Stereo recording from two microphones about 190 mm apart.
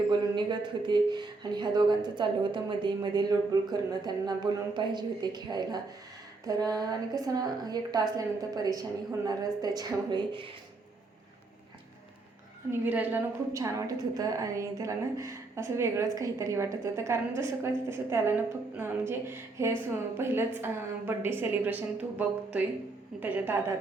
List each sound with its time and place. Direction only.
0.1 s speech: 25° right (ahead or behind)
12.7 s a woman's voice: 10° right (ahead or behind)